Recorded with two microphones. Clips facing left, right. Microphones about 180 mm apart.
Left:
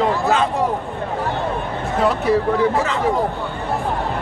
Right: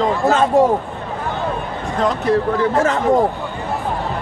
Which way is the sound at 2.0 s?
10° left (ahead or behind).